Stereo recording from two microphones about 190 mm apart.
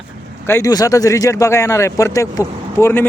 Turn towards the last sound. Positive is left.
turn(degrees=15)  # may be behind; listen again after turning